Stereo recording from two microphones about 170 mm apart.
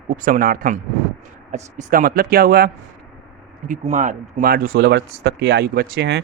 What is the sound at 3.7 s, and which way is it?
A man's voice, 50° right (ahead or behind).